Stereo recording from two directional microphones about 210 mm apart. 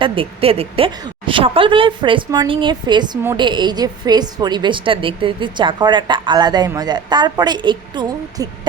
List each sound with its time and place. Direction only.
0.0 s a woman's voice: 25° right (ahead or behind)